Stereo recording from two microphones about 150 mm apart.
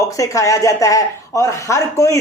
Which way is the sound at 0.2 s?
20° left (ahead or behind).